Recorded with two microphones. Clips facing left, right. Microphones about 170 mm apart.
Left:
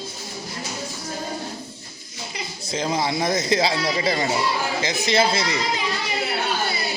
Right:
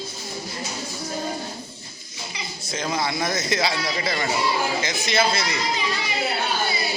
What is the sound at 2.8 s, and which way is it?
Speech, 30° left (ahead or behind).